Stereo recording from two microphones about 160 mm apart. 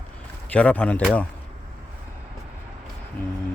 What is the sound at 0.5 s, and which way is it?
Speech, 10° left (ahead or behind).